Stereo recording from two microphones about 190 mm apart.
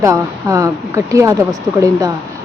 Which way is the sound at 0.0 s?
15° right (ahead or behind).